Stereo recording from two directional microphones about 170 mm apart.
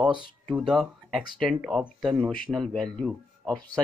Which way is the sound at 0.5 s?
Centre (ahead or behind).